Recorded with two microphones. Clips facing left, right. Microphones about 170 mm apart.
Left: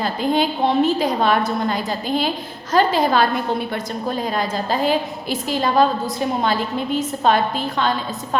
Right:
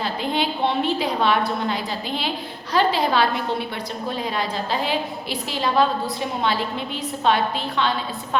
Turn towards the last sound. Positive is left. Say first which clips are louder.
# left 2 dB
turn(degrees=45)  # may be behind; listen again after turning